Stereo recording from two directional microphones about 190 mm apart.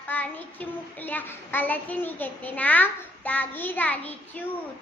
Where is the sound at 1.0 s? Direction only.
10° left (ahead or behind).